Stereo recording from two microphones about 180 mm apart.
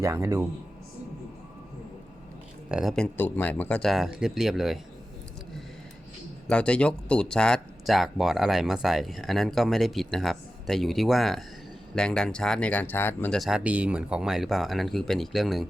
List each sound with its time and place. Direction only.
0.0 s speech: 15° right (ahead or behind)
2.6 s speech: 5° right (ahead or behind)
6.5 s speech: 5° left (ahead or behind)
13.4 s speech: 5° right (ahead or behind)